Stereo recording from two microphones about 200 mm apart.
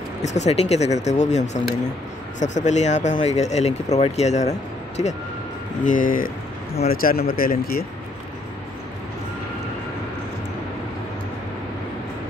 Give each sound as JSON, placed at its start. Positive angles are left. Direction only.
{"t": 0.2, "sound": "speech", "side_deg": 35}